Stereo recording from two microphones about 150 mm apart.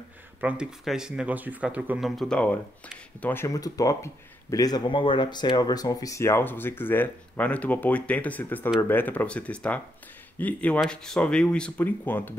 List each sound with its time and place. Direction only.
0.4 s speech: 5° right (ahead or behind); by 12.4 s 10° left (ahead or behind)